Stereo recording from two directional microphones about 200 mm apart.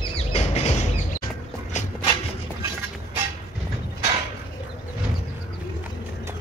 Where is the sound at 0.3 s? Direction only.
35° left (ahead or behind).